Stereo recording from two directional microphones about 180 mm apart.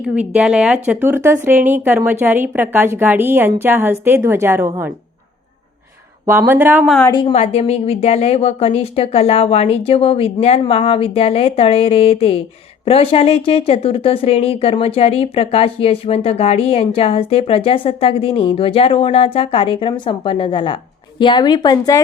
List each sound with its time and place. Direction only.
0.0 s speech: 5° right (ahead or behind)
6.2 s speech: 10° right (ahead or behind)
6.8 s a woman's voice: 5° left (ahead or behind)
7.1 s a woman's voice: 25° left (ahead or behind)
7.3 s a woman's voice: 35° left (ahead or behind); by 22.0 s 20° left (ahead or behind)